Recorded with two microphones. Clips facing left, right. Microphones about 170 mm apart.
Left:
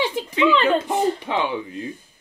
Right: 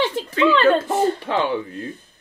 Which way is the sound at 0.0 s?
15° left (ahead or behind).